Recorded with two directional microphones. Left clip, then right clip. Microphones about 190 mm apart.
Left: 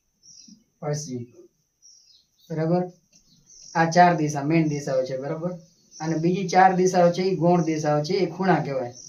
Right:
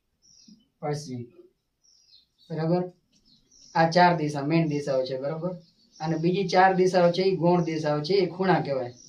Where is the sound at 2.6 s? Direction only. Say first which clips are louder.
Left 3 dB; 15° left (ahead or behind).